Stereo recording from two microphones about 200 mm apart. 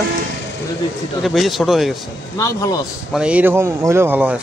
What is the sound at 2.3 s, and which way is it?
Speech, 15° left (ahead or behind).